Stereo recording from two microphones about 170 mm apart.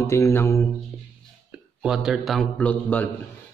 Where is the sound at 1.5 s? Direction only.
5° right (ahead or behind).